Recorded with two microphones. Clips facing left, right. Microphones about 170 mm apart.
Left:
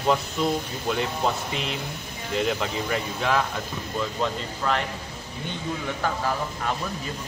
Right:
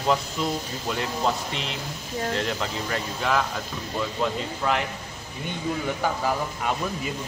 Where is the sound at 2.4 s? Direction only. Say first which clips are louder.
Left 2 dB; centre (ahead or behind).